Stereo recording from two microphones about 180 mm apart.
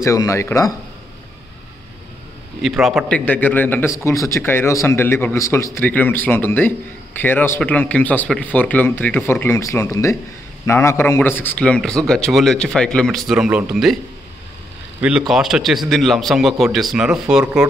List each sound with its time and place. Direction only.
0.0 s a man's voice: 15° left (ahead or behind)
2.6 s a man's voice: centre (ahead or behind)
15.0 s speech: 5° right (ahead or behind)